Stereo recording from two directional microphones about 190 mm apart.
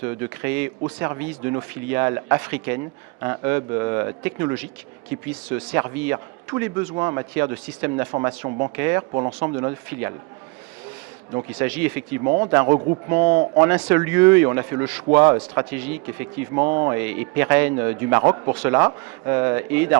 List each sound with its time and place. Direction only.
0.0 s speech: 10° right (ahead or behind)
8.3 s speech: 30° right (ahead or behind)
8.7 s speech: 15° right (ahead or behind)
11.5 s speech: 10° right (ahead or behind)
13.2 s speech: 40° right (ahead or behind)
13.6 s speech: 10° right (ahead or behind)
15.2 s speech: 30° right (ahead or behind)
15.5 s speech: 10° right (ahead or behind)